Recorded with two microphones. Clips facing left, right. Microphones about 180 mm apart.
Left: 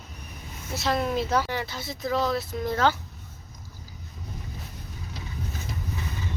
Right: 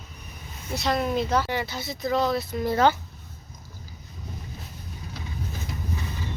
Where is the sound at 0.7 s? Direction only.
Centre (ahead or behind).